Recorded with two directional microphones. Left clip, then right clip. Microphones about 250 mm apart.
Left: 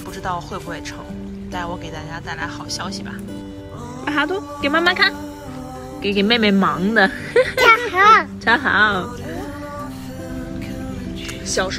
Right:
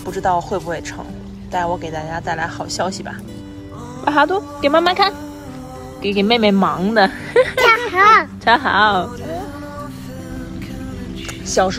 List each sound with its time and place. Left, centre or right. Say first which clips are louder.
0.1 s speech: right 8 dB; centre
2.0 s speech: right 6 dB; centre
4.0 s speech: right 6 dB; right
4.4 s speech: right 4 dB; centre
6.9 s speech: right 1 dB; left
7.5 s a sound: even; centre
8.5 s a woman's voice: right 2 dB; left
11.4 s music: right 5 dB; centre